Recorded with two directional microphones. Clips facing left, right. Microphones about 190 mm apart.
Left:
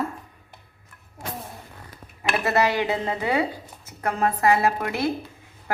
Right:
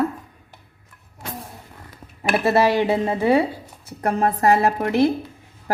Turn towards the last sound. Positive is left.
turn(degrees=-40)  # may be behind; listen again after turning